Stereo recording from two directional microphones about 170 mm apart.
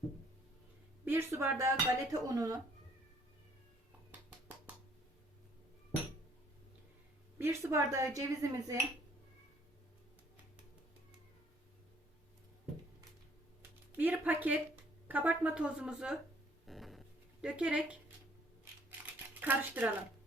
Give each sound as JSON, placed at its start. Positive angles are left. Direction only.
{"t": 1.0, "sound": "speech", "side_deg": -15}
{"t": 7.3, "sound": "speech", "side_deg": -15}
{"t": 13.9, "sound": "speech", "side_deg": -10}
{"t": 16.6, "sound": "a sound", "side_deg": 0}
{"t": 17.4, "sound": "speech", "side_deg": -5}
{"t": 19.4, "sound": "speech", "side_deg": -10}